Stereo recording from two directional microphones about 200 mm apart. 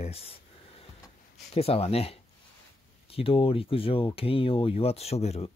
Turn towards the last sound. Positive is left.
turn(degrees=30)  # may be behind; listen again after turning